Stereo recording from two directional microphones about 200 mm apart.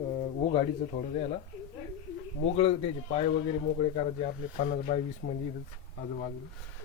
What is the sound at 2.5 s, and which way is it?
Speech, 30° left (ahead or behind).